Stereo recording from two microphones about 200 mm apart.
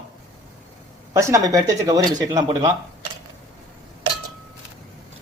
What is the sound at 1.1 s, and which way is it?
Speech, 15° right (ahead or behind).